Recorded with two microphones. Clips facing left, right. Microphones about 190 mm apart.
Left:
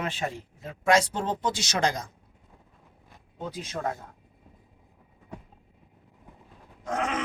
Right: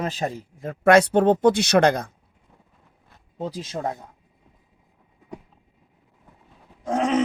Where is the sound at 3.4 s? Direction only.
30° right (ahead or behind).